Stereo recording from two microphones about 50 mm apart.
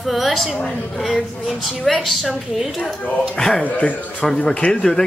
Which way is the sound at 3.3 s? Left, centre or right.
Centre.